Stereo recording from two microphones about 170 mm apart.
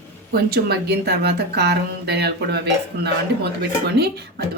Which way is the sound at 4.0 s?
70° right (ahead or behind).